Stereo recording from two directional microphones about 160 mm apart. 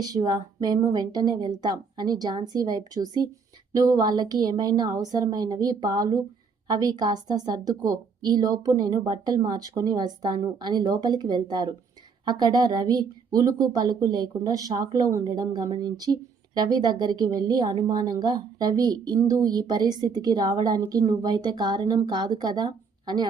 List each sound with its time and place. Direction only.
0.0 s a woman's voice: 25° right (ahead or behind)